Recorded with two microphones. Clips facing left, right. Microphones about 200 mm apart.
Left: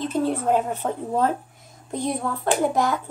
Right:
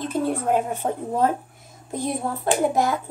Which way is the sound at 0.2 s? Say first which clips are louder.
Even; 45° right (ahead or behind).